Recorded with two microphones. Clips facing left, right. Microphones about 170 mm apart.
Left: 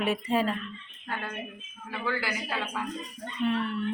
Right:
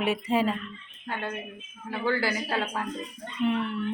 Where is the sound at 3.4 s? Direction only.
20° right (ahead or behind).